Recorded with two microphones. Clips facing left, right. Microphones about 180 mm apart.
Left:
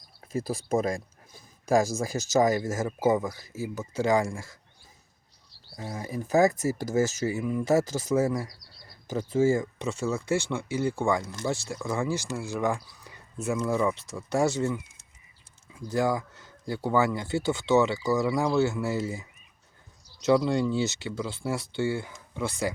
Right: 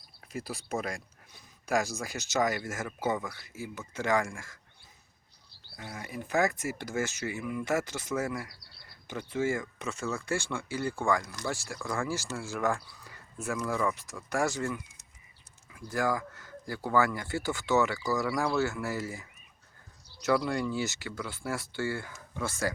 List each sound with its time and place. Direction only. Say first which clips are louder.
0.2 s speech: left 8 dB; 35° left (ahead or behind)
3.5 s speech: left 7 dB; 40° left (ahead or behind)
4.1 s speech: left 3 dB; 20° left (ahead or behind)
5.7 s speech: left 6 dB; 30° left (ahead or behind)
9.6 s speech: left 6 dB; 25° left (ahead or behind)
20.2 s speech: left 5 dB; 25° left (ahead or behind)